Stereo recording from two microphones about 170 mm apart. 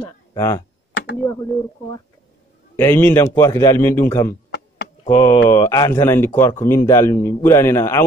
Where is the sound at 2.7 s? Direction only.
15° left (ahead or behind).